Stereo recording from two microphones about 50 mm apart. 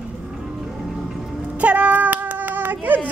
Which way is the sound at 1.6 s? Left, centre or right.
Right.